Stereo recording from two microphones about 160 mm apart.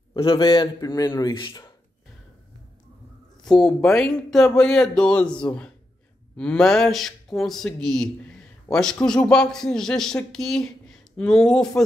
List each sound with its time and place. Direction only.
0.1 s a man's voice: 30° left (ahead or behind)
3.4 s speech: 5° left (ahead or behind)